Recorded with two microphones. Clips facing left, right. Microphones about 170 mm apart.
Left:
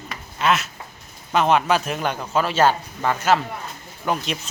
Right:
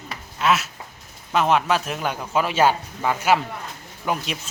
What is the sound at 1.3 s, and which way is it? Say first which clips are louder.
A man's voice: left 1 dB; centre (ahead or behind).